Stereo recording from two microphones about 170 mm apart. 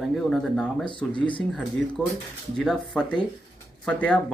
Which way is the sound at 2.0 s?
5° left (ahead or behind).